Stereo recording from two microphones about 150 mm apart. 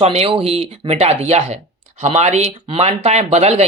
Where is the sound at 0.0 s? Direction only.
45° right (ahead or behind).